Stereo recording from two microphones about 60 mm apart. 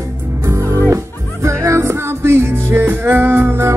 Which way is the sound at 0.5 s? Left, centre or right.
Right.